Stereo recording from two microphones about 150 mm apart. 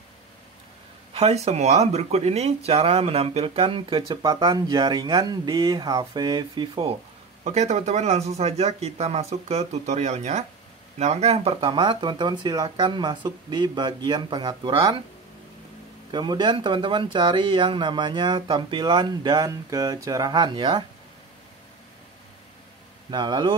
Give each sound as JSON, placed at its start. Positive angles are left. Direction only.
{"t": 1.1, "sound": "speech", "side_deg": -45}
{"t": 7.4, "sound": "speech", "side_deg": -50}
{"t": 16.1, "sound": "speech", "side_deg": -30}
{"t": 23.0, "sound": "speech", "side_deg": -30}